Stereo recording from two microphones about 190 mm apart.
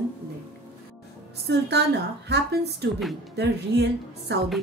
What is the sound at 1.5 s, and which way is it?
A woman's voice, 60° right (ahead or behind).